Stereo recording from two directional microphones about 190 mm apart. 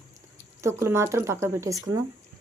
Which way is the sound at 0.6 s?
15° right (ahead or behind).